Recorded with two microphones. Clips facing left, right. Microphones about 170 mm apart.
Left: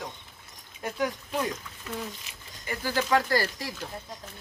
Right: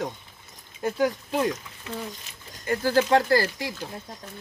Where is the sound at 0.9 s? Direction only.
30° right (ahead or behind).